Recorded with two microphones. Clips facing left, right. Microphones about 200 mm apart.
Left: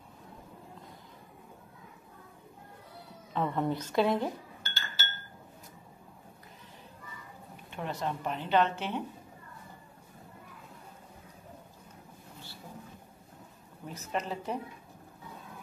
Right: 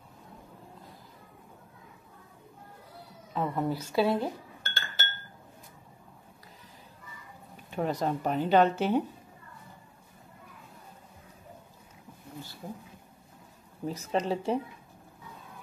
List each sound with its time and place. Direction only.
3.3 s a woman's voice: 5° right (ahead or behind)
4.6 s chink: 55° right (ahead or behind)
7.7 s speech: 40° right (ahead or behind)
13.8 s speech: 30° right (ahead or behind)